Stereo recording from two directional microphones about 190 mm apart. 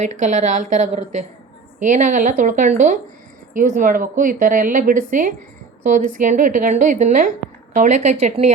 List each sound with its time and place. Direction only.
0.1 s a woman's voice: 40° right (ahead or behind)